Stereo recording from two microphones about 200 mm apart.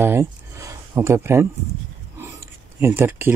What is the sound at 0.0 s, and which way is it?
Speech, 10° right (ahead or behind).